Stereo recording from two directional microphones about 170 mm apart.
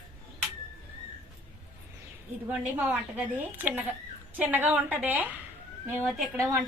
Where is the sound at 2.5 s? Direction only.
10° right (ahead or behind).